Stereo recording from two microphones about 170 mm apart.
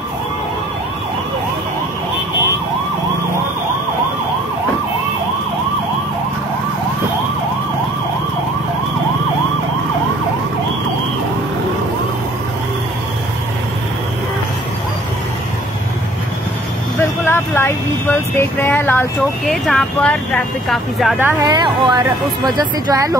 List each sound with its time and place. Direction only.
17.0 s vehicle: 15° left (ahead or behind)
19.5 s speech: centre (ahead or behind)
21.2 s speech: 10° right (ahead or behind)
21.5 s speech: 25° right (ahead or behind)